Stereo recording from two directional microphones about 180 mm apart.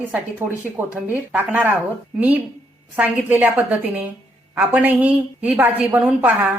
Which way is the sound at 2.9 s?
10° right (ahead or behind).